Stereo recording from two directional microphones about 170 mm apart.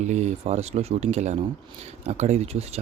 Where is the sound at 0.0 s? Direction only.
45° right (ahead or behind).